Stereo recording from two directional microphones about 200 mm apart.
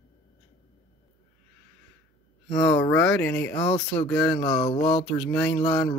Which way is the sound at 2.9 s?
5° left (ahead or behind).